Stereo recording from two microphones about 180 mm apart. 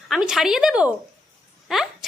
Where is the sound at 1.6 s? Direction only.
Centre (ahead or behind).